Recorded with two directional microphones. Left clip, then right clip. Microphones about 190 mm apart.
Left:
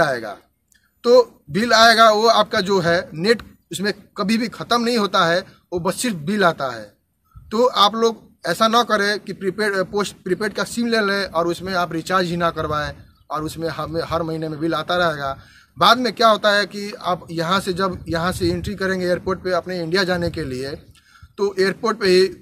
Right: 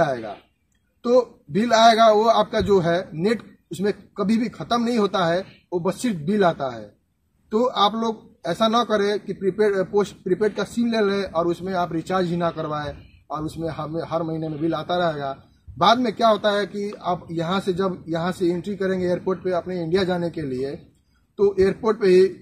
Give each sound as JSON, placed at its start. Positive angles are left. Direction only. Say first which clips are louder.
{"t": 0.0, "sound": "speech", "louder": "left 3 dB", "side_deg": 15}